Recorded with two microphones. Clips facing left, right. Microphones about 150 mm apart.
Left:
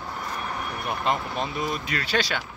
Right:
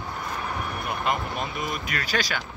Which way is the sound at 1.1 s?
30° left (ahead or behind).